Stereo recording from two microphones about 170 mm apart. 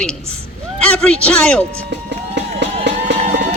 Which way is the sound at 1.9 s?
90° right.